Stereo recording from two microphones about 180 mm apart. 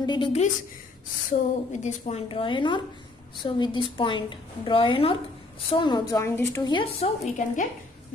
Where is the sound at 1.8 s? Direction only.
35° left (ahead or behind); by 6.7 s 15° left (ahead or behind).